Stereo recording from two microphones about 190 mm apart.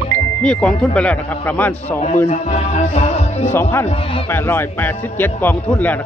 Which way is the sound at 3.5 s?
15° left (ahead or behind).